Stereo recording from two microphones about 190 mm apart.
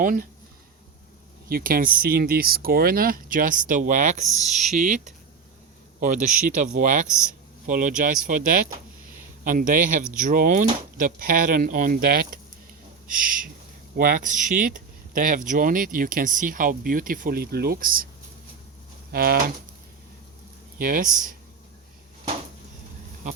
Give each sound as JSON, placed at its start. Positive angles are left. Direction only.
{"t": 0.0, "sound": "speech", "side_deg": -45}
{"t": 1.5, "sound": "a man's voice", "side_deg": -50}
{"t": 19.1, "sound": "speech", "side_deg": -50}
{"t": 20.7, "sound": "speech", "side_deg": -45}